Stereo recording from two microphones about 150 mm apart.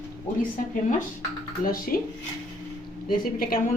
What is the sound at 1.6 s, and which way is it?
Speech, 75° left (ahead or behind).